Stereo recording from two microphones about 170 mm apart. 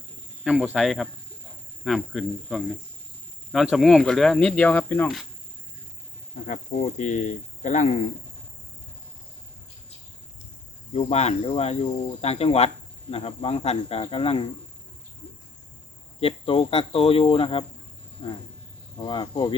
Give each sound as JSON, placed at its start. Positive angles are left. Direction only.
{"t": 0.4, "sound": "speech", "side_deg": 0}
{"t": 6.5, "sound": "speech", "side_deg": 45}
{"t": 10.9, "sound": "speech", "side_deg": 40}
{"t": 16.2, "sound": "speech", "side_deg": 35}